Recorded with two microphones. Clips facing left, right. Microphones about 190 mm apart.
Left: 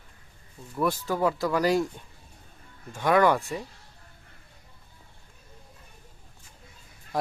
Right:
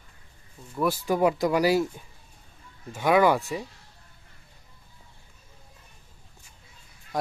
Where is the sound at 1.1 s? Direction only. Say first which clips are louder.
Right 3 dB; 15° right (ahead or behind).